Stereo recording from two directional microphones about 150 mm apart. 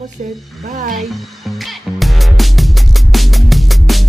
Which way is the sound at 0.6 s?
55° right (ahead or behind).